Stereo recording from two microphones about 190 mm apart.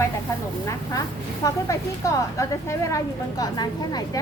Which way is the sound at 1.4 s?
15° left (ahead or behind).